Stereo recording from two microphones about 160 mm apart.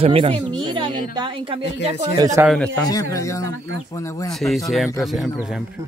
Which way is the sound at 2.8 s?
20° left (ahead or behind).